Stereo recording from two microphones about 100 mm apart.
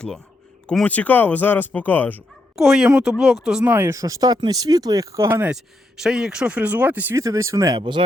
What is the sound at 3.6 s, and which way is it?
Speech, 20° right (ahead or behind).